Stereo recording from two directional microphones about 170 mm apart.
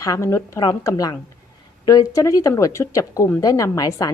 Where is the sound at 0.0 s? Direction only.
20° left (ahead or behind).